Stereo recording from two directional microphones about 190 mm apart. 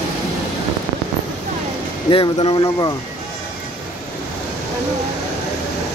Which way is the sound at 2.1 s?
30° left (ahead or behind).